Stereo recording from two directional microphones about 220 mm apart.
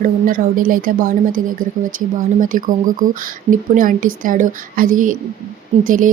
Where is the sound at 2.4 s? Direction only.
35° right (ahead or behind).